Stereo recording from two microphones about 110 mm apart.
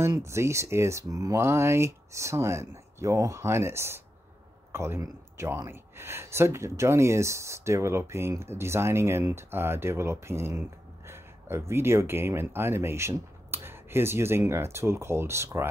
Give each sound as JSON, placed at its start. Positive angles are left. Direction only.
{"t": 0.1, "sound": "speech", "side_deg": -25}